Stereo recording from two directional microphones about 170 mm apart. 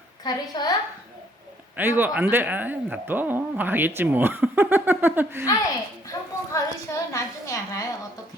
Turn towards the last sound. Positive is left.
turn(degrees=20)  # may be behind; listen again after turning